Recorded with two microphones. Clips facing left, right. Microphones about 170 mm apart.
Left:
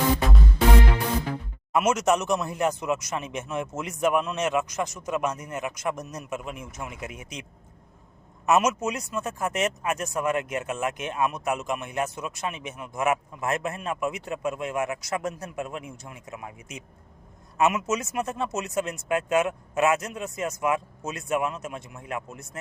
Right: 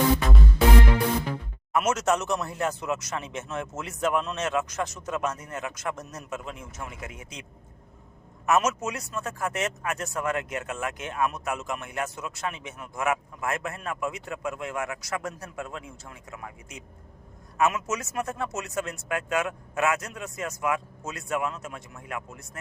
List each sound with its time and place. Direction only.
1.9 s a man's voice: 15° left (ahead or behind)
8.4 s speech: 20° left (ahead or behind)